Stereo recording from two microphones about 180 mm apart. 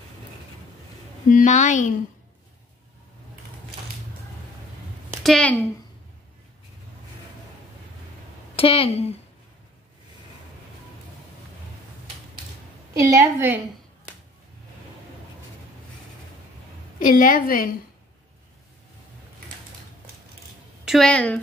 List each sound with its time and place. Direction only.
1.3 s a woman's voice: 45° left (ahead or behind)
5.2 s speech: 5° left (ahead or behind)
8.5 s speech: 30° left (ahead or behind)
13.1 s a woman's voice: 15° right (ahead or behind)
17.0 s a woman's voice: 50° left (ahead or behind)
20.8 s a woman's voice: centre (ahead or behind)